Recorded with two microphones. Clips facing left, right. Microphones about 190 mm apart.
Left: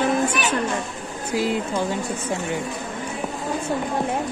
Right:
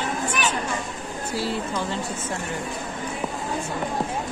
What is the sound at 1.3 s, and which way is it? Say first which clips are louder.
Speech: left 5 dB; 15° left (ahead or behind).